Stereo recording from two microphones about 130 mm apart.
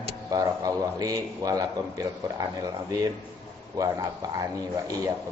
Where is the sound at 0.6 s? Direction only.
25° right (ahead or behind).